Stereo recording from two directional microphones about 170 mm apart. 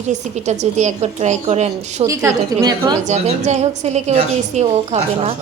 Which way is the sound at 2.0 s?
20° right (ahead or behind).